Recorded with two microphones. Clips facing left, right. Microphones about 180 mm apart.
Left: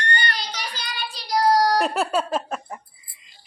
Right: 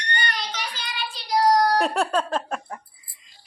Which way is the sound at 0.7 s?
40° left (ahead or behind).